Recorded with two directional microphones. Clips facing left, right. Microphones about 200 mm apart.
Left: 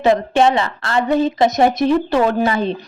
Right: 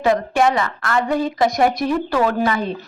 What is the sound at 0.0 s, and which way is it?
A woman's voice, 25° left (ahead or behind).